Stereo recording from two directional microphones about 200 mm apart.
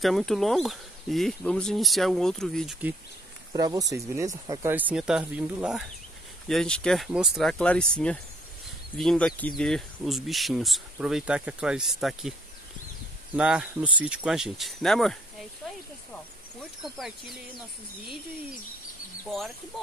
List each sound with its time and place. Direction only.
0.0 s speech: centre (ahead or behind)
3.5 s speech: 20° right (ahead or behind); by 12.4 s centre (ahead or behind)
13.4 s speech: 5° right (ahead or behind)
15.6 s a sound: centre (ahead or behind)
16.8 s speech: centre (ahead or behind)